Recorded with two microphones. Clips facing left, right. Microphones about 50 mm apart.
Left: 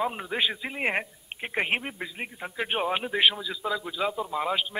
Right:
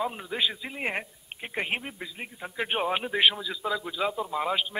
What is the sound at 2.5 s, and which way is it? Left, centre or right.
A man's voice, centre.